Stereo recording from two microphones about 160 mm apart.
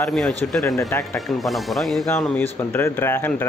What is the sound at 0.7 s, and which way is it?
Speech, 20° left (ahead or behind).